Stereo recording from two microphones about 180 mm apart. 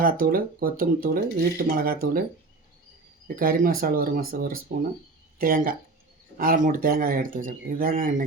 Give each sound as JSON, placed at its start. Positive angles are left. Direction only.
{"t": 0.0, "sound": "speech", "side_deg": -50}
{"t": 3.2, "sound": "speech", "side_deg": -55}